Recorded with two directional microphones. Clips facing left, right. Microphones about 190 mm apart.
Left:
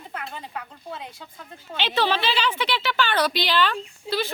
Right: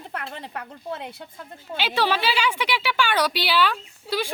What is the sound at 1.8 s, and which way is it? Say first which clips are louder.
A woman's voice: even; 10° right (ahead or behind).